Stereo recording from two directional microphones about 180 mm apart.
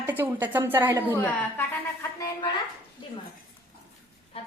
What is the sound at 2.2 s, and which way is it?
Speech, 20° left (ahead or behind).